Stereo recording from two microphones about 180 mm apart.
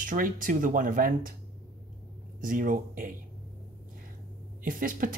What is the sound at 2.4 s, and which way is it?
Speech, 50° right (ahead or behind).